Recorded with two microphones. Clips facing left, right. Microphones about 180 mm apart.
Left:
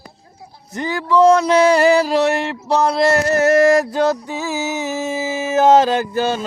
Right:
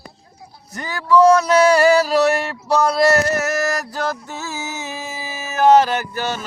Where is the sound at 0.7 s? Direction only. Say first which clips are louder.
Even; 20° left (ahead or behind).